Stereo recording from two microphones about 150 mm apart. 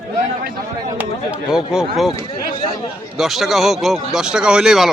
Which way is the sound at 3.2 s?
Centre (ahead or behind).